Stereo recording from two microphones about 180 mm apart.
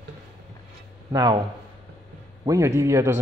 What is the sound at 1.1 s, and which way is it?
Speech, 25° right (ahead or behind).